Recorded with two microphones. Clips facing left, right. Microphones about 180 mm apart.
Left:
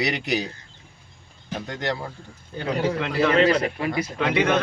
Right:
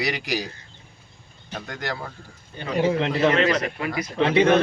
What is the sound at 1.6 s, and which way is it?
Speech, 20° left (ahead or behind).